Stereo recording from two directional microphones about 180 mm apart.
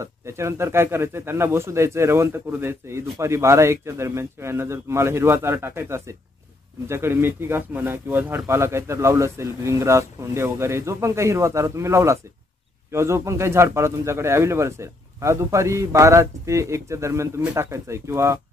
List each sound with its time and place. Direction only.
0.0 s speech: 15° right (ahead or behind)